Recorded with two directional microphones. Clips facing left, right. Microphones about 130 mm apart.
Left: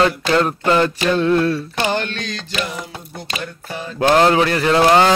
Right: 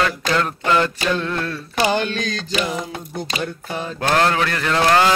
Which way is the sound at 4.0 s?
20° left (ahead or behind).